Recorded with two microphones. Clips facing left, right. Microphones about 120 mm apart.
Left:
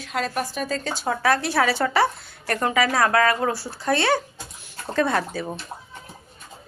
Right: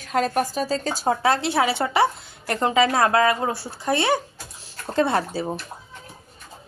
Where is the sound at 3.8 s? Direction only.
20° right (ahead or behind).